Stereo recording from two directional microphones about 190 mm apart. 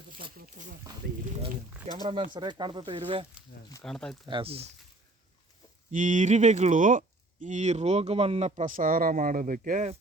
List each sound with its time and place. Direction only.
0.3 s a sound: 50° right (ahead or behind)
2.0 s speech: 25° right (ahead or behind)
3.8 s speech: 5° left (ahead or behind)
4.3 s speech: 30° right (ahead or behind)
5.9 s speech: 40° right (ahead or behind)